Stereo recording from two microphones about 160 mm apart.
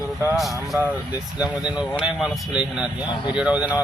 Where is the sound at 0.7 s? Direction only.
15° right (ahead or behind).